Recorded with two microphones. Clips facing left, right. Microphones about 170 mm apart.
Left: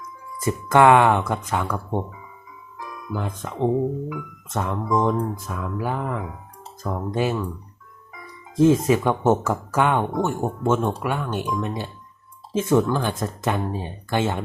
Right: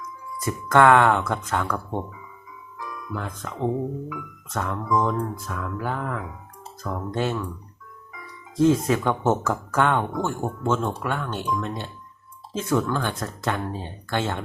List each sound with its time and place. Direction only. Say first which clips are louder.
0.4 s speech: left 2 dB; 15° left (ahead or behind)
3.1 s speech: left 4 dB; 20° left (ahead or behind)
4.5 s speech: left 2 dB; 20° left (ahead or behind)
8.6 s speech: left 3 dB; 15° left (ahead or behind)